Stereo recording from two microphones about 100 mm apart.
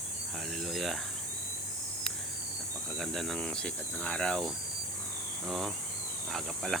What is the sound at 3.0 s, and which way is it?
Speech, centre (ahead or behind).